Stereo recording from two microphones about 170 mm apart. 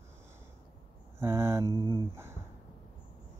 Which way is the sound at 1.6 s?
20° left (ahead or behind).